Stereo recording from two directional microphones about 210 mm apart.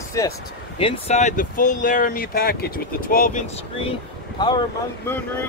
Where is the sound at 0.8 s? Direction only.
30° left (ahead or behind).